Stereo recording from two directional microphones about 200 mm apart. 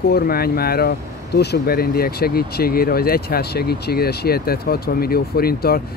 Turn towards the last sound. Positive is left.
turn(degrees=50)  # may be behind; listen again after turning